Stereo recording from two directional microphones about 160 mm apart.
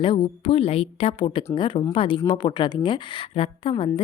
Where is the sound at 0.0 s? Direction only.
35° left (ahead or behind).